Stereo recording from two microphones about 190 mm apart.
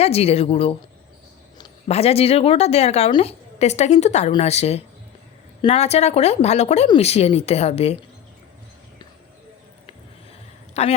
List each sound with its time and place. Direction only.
0.0 s a woman's voice: 30° left (ahead or behind)
10.8 s a woman's voice: 35° left (ahead or behind)